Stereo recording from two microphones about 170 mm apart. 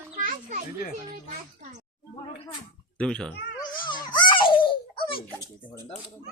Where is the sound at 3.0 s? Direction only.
5° left (ahead or behind).